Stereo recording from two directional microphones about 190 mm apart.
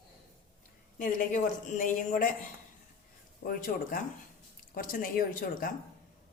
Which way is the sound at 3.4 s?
45° left (ahead or behind).